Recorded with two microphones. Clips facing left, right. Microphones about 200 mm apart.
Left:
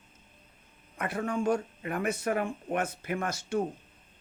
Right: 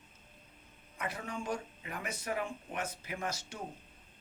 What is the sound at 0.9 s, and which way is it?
Speech, 55° left (ahead or behind).